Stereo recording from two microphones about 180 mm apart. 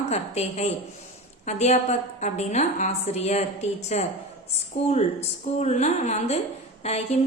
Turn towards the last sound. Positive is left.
turn(degrees=35)  # may be behind; listen again after turning